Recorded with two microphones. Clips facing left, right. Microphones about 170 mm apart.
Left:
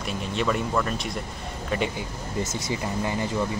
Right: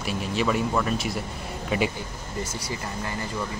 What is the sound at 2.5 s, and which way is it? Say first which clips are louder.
Speech: left 4 dB; 20° left (ahead or behind).